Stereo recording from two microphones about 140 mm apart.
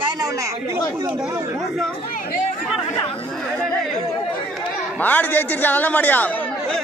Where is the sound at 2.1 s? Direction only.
80° left.